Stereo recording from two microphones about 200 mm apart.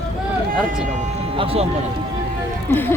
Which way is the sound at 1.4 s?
30° right (ahead or behind).